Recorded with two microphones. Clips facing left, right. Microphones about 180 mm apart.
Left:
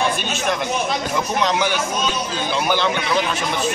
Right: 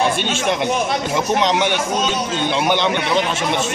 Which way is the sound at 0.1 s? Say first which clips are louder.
Right 3 dB; 25° right (ahead or behind).